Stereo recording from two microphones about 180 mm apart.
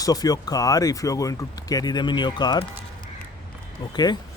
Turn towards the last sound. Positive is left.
turn(degrees=25)  # may be behind; listen again after turning